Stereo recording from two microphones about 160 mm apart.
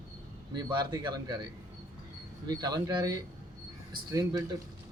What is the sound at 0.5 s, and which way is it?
Speech, 25° right (ahead or behind).